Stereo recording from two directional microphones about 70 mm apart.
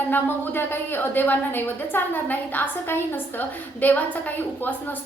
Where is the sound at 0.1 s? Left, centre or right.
Left.